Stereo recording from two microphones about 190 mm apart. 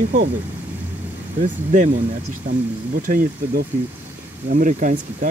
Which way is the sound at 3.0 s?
45° right (ahead or behind).